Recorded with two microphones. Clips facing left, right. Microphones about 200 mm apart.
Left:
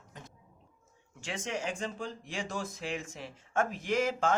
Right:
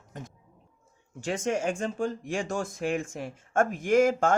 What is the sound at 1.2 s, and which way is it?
Speech, 45° right (ahead or behind).